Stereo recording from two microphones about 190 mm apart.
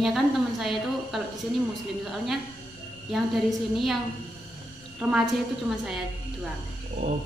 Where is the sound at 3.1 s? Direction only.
Centre (ahead or behind).